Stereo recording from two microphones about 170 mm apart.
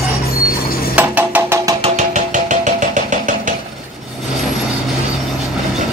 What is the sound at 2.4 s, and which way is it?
Engine, 50° right (ahead or behind).